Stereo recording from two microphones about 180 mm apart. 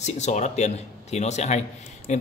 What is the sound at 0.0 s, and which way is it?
A man's voice, 40° left (ahead or behind).